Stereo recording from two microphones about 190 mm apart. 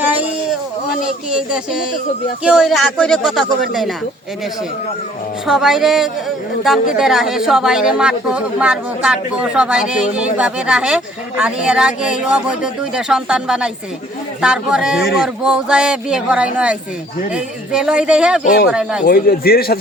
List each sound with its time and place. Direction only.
0.0 s a sound: 10° right (ahead or behind)
2.4 s speech: 5° right (ahead or behind)
5.5 s speech: centre (ahead or behind)
19.0 s a man's voice: 55° left (ahead or behind)